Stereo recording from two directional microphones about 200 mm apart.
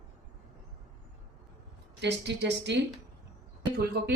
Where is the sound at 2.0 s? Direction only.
60° right (ahead or behind).